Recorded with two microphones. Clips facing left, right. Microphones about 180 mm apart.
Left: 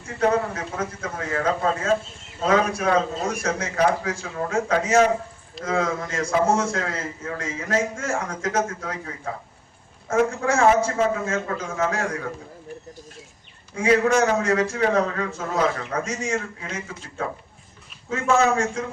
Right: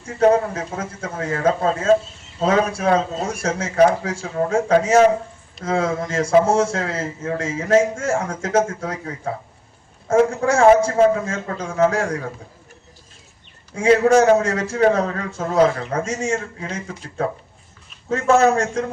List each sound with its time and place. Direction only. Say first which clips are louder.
0.2 s a man's voice: right 6 dB; 30° right (ahead or behind)
10.1 s a man's voice: right 5 dB; 30° right (ahead or behind)
13.7 s a man's voice: right 5 dB; 30° right (ahead or behind)